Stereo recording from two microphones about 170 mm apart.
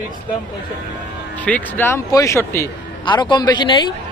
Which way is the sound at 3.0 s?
25° left (ahead or behind).